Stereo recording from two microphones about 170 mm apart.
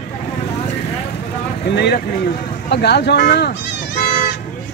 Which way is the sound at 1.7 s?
80° left.